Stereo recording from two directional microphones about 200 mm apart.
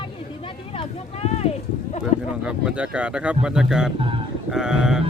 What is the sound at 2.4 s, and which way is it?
Speech, 5° right (ahead or behind).